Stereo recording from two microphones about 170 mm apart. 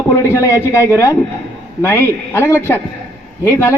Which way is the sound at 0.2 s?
15° left (ahead or behind).